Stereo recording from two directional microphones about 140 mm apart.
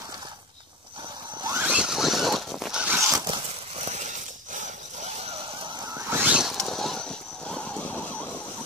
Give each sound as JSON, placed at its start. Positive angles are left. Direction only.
{"t": 1.6, "sound": "zipper", "side_deg": -5}
{"t": 3.0, "sound": "zipper", "side_deg": -20}
{"t": 3.7, "sound": "a sound", "side_deg": -55}
{"t": 5.9, "sound": "zipper", "side_deg": -15}
{"t": 6.3, "sound": "vehicle", "side_deg": 0}